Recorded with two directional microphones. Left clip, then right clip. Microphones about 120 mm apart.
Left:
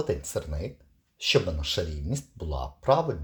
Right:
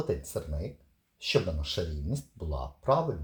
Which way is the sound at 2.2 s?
35° left (ahead or behind).